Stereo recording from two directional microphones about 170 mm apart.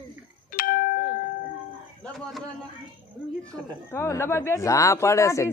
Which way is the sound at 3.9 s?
15° left (ahead or behind).